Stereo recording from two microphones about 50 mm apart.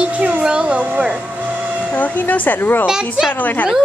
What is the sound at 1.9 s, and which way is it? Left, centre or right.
Speech, left.